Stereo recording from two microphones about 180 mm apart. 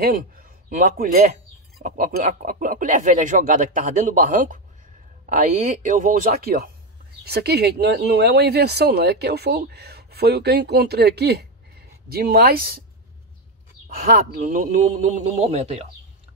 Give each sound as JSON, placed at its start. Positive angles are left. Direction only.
{"t": 0.0, "sound": "a man's voice", "side_deg": -55}
{"t": 14.0, "sound": "a man's voice", "side_deg": -45}